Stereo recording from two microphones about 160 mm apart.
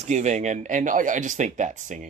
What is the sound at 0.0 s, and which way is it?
Speech, 45° right (ahead or behind).